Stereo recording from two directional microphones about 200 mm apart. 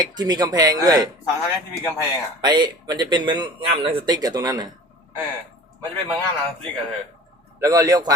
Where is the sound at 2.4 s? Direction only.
20° right (ahead or behind).